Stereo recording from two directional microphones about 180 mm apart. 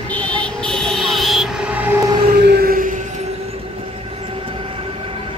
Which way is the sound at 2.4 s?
60° right (ahead or behind).